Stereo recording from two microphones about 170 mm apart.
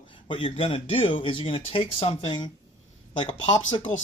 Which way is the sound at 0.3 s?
30° left (ahead or behind).